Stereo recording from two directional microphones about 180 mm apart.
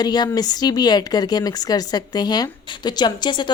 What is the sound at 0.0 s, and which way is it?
Speech, 20° left (ahead or behind).